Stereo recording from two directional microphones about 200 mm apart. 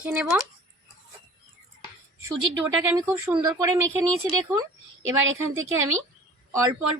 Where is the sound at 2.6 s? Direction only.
10° right (ahead or behind).